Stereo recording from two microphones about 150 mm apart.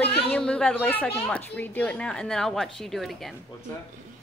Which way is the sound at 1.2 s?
10° left (ahead or behind).